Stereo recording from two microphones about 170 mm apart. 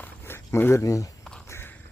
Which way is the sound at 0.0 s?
15° left (ahead or behind).